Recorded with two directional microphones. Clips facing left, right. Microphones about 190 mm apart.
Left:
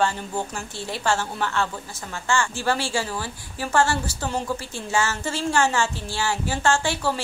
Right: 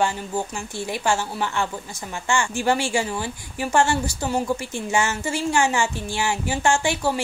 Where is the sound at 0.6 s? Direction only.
15° right (ahead or behind).